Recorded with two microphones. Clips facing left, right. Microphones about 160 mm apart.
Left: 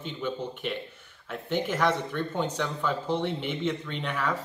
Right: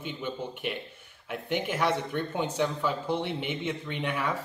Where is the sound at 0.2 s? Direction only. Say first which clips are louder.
Left 3 dB; 10° right (ahead or behind).